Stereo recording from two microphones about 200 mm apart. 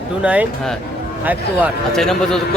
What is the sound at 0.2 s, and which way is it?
Speech, 5° right (ahead or behind).